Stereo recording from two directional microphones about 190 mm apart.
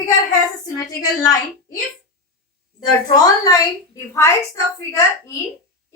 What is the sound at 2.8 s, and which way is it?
A woman's voice, 20° left (ahead or behind).